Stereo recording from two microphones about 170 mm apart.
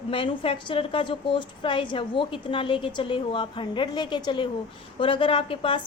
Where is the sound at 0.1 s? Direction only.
30° left (ahead or behind).